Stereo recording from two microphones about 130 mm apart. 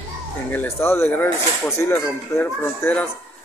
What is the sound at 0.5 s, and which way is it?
Speech, 15° left (ahead or behind).